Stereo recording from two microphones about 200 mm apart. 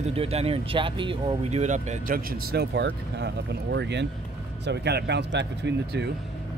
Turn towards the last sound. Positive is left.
turn(degrees=-60)  # may be behind; listen again after turning